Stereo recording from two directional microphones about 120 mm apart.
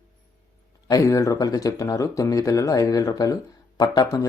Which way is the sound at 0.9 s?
25° left (ahead or behind).